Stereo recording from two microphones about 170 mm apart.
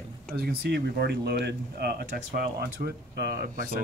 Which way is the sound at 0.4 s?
65° right (ahead or behind).